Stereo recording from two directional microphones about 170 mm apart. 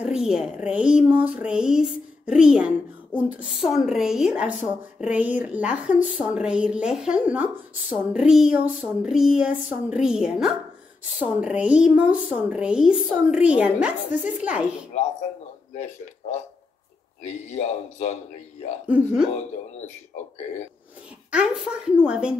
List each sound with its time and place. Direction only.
0.0 s a woman's voice: 5° right (ahead or behind)
15.8 s speech: 40° left (ahead or behind)
18.9 s a woman's voice: 5° right (ahead or behind)
21.3 s speech: 5° right (ahead or behind)